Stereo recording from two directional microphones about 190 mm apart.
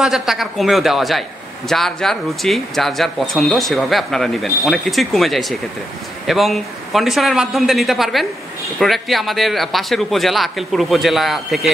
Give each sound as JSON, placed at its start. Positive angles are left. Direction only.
{"t": 0.0, "sound": "speech", "side_deg": 0}